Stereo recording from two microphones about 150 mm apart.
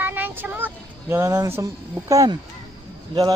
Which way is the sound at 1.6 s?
20° right (ahead or behind).